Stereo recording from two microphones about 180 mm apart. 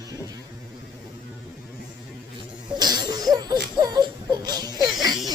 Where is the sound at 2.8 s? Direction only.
25° right (ahead or behind).